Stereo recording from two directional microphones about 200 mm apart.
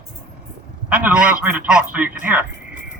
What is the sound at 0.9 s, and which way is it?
A man's voice, 5° right (ahead or behind).